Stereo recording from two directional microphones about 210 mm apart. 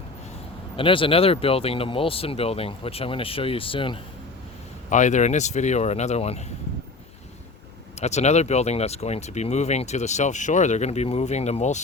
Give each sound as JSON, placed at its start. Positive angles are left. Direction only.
{"t": 0.8, "sound": "speech", "side_deg": 25}
{"t": 4.9, "sound": "speech", "side_deg": 35}
{"t": 7.9, "sound": "speech", "side_deg": 30}